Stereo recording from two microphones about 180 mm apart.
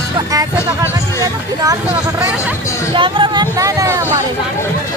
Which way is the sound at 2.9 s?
25° right (ahead or behind).